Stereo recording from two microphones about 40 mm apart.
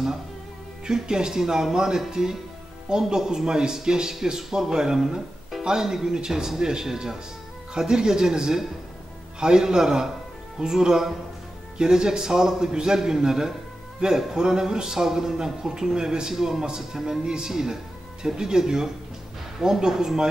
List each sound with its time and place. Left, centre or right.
0.8 s a man's voice: centre